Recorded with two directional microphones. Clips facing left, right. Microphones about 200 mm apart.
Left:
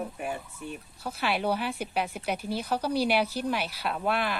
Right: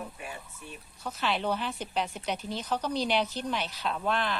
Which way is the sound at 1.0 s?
10° left (ahead or behind).